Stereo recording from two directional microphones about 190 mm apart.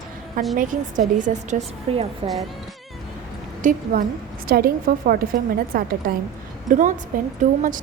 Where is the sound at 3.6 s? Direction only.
45° right (ahead or behind).